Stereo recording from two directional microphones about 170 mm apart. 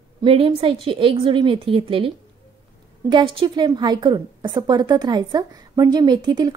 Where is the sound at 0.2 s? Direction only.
35° right (ahead or behind).